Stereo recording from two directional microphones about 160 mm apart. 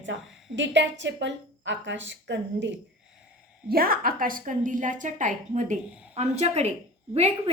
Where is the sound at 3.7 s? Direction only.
65° right (ahead or behind).